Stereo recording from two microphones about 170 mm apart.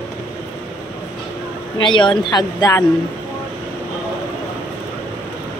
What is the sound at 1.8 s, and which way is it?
A woman's voice, 30° left (ahead or behind).